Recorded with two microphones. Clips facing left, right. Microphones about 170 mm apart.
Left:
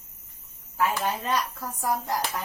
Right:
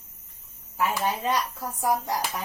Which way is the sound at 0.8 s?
15° right (ahead or behind).